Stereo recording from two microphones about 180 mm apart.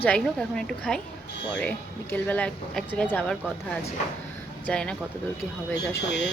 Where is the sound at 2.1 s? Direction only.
10° left (ahead or behind).